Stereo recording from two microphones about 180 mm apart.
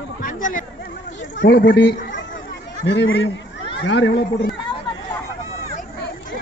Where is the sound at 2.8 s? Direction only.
85° left.